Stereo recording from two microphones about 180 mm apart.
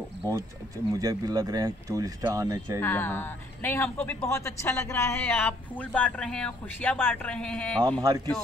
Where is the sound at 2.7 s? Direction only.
10° left (ahead or behind).